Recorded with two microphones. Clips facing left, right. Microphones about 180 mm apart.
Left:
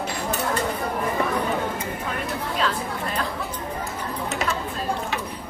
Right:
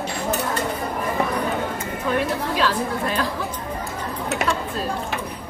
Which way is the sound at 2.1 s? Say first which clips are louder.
Right 7 dB; 85° right.